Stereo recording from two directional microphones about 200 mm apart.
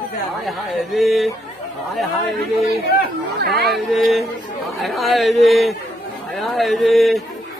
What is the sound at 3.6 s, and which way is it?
A man's voice, centre (ahead or behind).